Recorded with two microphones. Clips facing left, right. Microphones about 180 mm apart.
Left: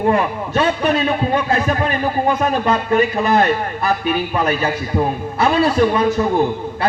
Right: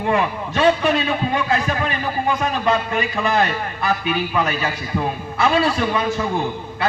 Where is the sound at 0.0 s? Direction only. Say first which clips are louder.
Left 3 dB; 45° left (ahead or behind).